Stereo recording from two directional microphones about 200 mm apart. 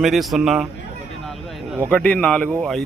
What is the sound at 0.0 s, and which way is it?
Speech, centre (ahead or behind).